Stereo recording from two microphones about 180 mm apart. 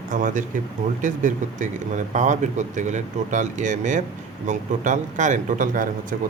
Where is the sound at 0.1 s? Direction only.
45° right (ahead or behind).